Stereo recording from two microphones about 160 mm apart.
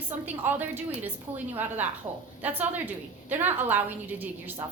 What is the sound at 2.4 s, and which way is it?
A woman's voice, 10° right (ahead or behind).